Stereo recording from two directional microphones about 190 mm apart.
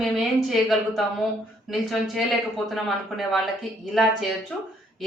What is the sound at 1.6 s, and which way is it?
A woman's voice, centre (ahead or behind).